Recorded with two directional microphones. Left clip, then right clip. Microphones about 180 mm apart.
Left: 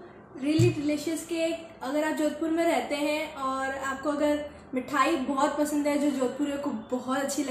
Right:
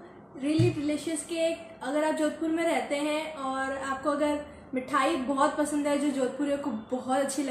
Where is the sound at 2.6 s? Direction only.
Centre (ahead or behind).